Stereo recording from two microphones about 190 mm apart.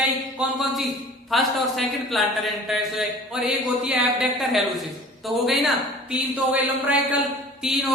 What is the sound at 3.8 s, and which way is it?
Speech, 5° right (ahead or behind).